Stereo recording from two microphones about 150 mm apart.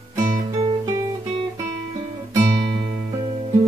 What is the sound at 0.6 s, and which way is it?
Music, 25° right (ahead or behind).